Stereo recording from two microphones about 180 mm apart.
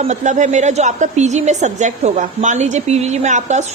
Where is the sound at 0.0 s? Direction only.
40° right (ahead or behind).